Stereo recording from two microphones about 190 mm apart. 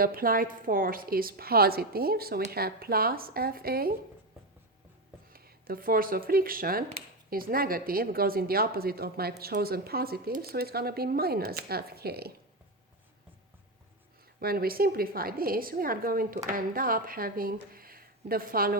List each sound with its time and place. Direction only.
0.0 s speech: 50° right (ahead or behind)
5.3 s speech: 50° right (ahead or behind)
14.3 s speech: 50° right (ahead or behind)